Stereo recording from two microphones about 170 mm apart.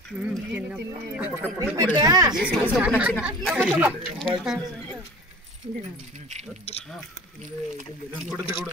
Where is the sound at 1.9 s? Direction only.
20° right (ahead or behind).